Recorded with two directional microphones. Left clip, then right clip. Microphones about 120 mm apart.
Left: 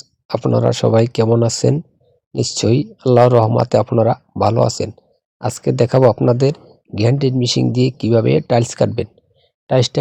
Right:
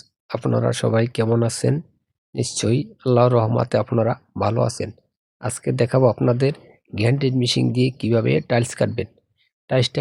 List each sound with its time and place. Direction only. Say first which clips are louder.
0.0 s speech: left 6 dB; 30° left (ahead or behind)